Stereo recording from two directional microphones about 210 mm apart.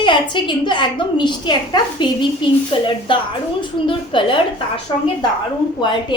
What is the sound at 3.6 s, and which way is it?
Speech, 25° left (ahead or behind).